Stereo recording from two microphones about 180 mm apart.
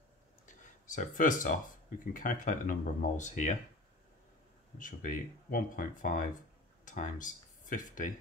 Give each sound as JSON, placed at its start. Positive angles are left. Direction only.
{"t": 0.5, "sound": "speech", "side_deg": 45}
{"t": 4.7, "sound": "speech", "side_deg": 50}